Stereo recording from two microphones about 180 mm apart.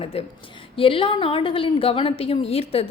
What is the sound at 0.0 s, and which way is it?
A woman's voice, 35° left (ahead or behind).